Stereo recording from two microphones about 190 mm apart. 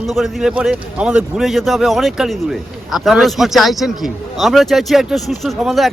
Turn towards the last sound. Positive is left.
turn(degrees=0)  # may be behind; listen again after turning